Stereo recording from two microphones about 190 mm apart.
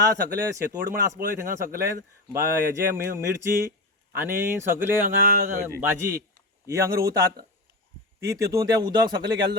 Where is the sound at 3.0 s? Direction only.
15° right (ahead or behind).